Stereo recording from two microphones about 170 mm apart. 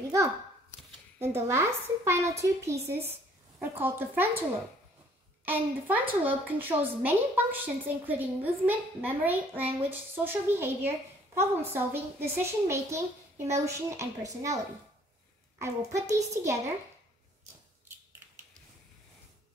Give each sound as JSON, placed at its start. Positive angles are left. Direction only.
{"t": 1.2, "sound": "a woman's voice", "side_deg": -15}
{"t": 5.4, "sound": "a woman's voice", "side_deg": -10}
{"t": 15.6, "sound": "a woman's voice", "side_deg": -15}